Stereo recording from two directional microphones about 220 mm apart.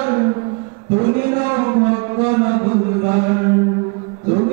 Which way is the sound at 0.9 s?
15° right (ahead or behind).